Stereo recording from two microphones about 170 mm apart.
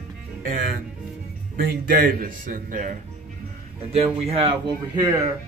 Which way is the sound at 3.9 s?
35° right (ahead or behind).